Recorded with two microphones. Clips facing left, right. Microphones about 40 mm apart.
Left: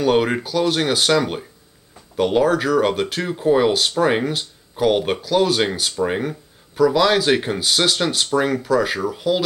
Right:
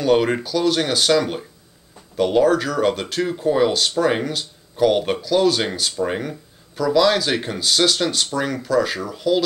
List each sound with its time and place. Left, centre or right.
0.0 s speech: centre